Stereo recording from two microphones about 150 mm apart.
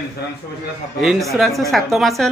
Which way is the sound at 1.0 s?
Centre (ahead or behind).